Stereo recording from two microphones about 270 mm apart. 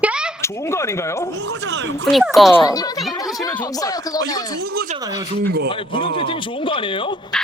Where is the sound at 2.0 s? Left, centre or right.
Centre.